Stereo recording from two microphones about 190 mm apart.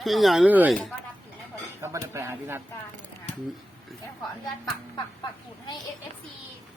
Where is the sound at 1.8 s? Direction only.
15° right (ahead or behind).